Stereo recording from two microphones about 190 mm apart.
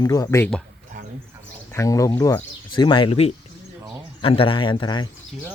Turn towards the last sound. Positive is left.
turn(degrees=25)  # may be behind; listen again after turning